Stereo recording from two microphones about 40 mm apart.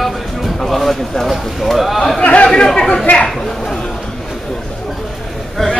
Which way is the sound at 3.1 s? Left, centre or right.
Left.